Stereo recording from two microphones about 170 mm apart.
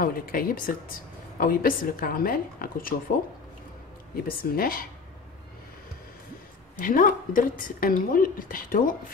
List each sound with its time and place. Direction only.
0.0 s a woman's voice: 55° left (ahead or behind)
4.3 s a woman's voice: 60° left (ahead or behind)
6.8 s a woman's voice: 55° left (ahead or behind)